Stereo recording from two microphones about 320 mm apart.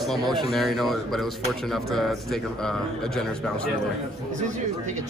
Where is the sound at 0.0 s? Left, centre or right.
Centre.